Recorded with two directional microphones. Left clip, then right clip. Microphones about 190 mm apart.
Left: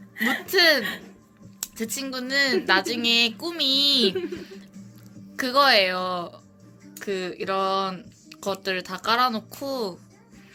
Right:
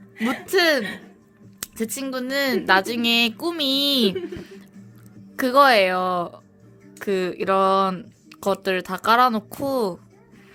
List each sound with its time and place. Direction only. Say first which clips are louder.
0.3 s speech: even; 35° right (ahead or behind)
4.4 s a sound: right 1 dB; 35° right (ahead or behind)
5.4 s speech: right 3 dB; 40° right (ahead or behind)